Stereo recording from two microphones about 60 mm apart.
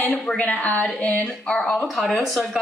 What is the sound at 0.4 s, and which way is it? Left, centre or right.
A woman's voice, left.